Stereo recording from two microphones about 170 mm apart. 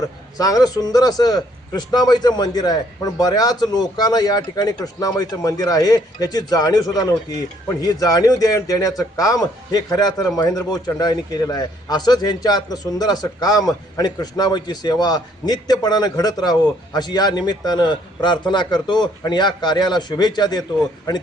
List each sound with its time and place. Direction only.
0.3 s a man's voice: 20° left (ahead or behind)